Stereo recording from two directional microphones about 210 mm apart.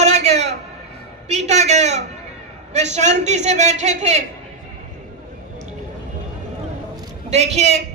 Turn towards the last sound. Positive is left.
turn(degrees=-30)  # may be behind; listen again after turning